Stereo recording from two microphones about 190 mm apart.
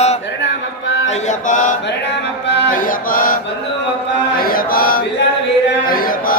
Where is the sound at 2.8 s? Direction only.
45° left (ahead or behind).